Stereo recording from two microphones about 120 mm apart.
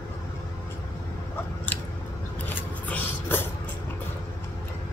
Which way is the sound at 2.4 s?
15° left (ahead or behind).